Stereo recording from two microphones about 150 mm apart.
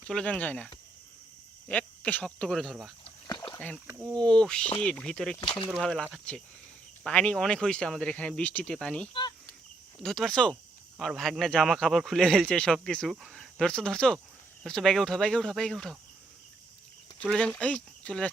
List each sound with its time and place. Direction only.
0.1 s a man's voice: 5° left (ahead or behind)
3.0 s a sound: 30° left (ahead or behind)
4.2 s a man's voice: 5° left (ahead or behind)
5.4 s speech: 30° left (ahead or behind)
5.7 s a man's voice: centre (ahead or behind)
17.2 s a man's voice: 5° left (ahead or behind)